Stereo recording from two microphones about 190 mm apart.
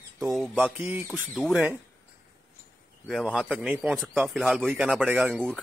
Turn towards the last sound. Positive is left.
turn(degrees=0)  # may be behind; listen again after turning